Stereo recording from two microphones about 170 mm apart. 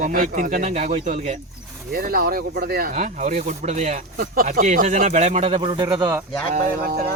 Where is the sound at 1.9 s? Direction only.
60° right (ahead or behind); by 5.6 s 40° right (ahead or behind).